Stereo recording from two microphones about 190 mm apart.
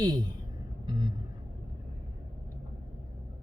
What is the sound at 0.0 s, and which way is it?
Speech, 20° right (ahead or behind).